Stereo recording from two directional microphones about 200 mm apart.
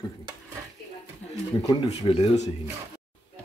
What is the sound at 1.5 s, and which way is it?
Speech, 20° left (ahead or behind).